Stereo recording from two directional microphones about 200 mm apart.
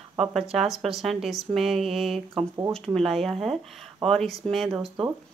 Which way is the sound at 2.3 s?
20° right (ahead or behind).